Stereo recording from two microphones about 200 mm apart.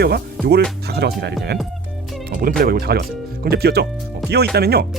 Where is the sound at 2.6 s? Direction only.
50° right (ahead or behind).